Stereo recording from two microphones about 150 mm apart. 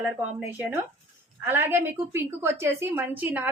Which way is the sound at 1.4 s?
15° right (ahead or behind).